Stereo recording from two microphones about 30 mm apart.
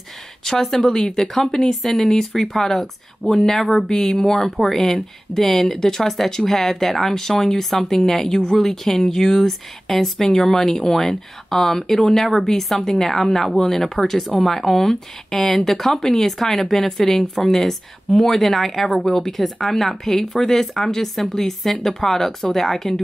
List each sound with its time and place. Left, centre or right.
0.4 s speech: centre